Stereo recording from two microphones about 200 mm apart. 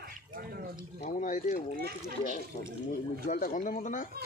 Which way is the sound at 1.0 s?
40° left (ahead or behind).